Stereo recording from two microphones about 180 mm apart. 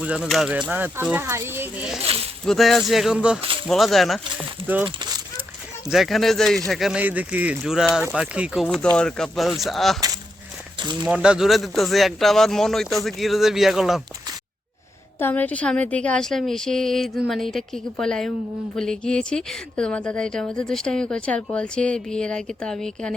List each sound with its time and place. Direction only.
0.0 s speech: 5° right (ahead or behind)
4.9 s a sound: 25° right (ahead or behind)
5.9 s speech: centre (ahead or behind)
15.2 s speech: 10° left (ahead or behind)